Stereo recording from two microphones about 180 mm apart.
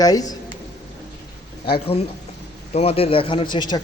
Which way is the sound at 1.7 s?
30° left (ahead or behind).